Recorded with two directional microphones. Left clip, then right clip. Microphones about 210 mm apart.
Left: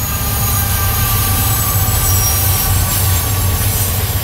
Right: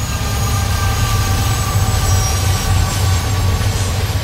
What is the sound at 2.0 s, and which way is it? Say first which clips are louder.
Vehicle: left 2 dB; 50° left (ahead or behind).